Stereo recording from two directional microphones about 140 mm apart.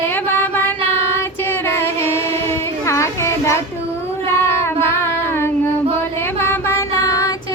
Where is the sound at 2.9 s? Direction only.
20° left (ahead or behind).